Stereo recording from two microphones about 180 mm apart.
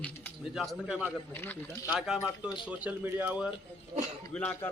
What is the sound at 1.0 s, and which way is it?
Speech, 10° left (ahead or behind).